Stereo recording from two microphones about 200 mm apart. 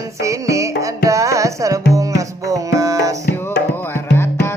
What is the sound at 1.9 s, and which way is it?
Tabla, 15° right (ahead or behind).